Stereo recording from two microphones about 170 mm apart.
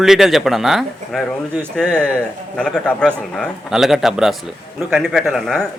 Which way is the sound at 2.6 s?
5° left (ahead or behind).